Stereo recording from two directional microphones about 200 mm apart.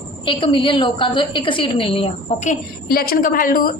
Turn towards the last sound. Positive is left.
turn(degrees=45)  # may be behind; listen again after turning